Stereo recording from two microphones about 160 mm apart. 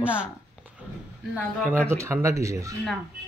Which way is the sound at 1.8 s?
15° right (ahead or behind).